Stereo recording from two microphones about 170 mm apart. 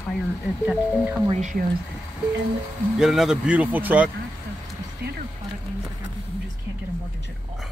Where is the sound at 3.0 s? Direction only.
Centre (ahead or behind).